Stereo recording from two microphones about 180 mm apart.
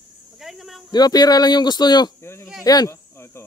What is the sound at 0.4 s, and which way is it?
Speech, centre (ahead or behind).